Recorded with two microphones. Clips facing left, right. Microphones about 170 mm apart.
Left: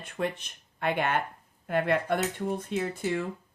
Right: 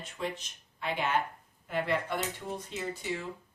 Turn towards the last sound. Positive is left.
turn(degrees=55)  # may be behind; listen again after turning